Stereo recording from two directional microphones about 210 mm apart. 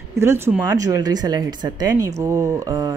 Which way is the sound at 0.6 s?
15° right (ahead or behind).